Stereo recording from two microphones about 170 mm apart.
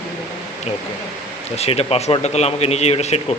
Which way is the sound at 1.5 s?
35° left (ahead or behind).